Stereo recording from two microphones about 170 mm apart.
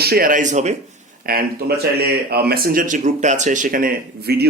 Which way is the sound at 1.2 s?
60° right (ahead or behind).